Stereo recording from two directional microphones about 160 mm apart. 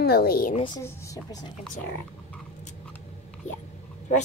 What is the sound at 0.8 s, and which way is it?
Speech, 25° left (ahead or behind).